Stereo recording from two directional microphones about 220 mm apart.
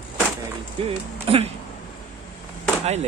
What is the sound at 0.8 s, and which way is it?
Speech, 25° right (ahead or behind).